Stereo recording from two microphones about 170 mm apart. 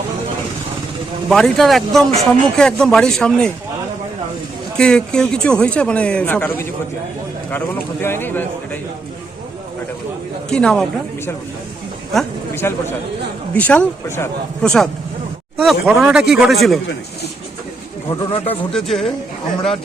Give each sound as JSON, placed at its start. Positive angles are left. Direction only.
{"t": 1.3, "sound": "speech", "side_deg": 0}
{"t": 4.8, "sound": "speech", "side_deg": 5}
{"t": 10.5, "sound": "speech", "side_deg": 5}
{"t": 12.6, "sound": "speech", "side_deg": 15}
{"t": 18.1, "sound": "speech", "side_deg": 30}
{"t": 18.4, "sound": "speech", "side_deg": 5}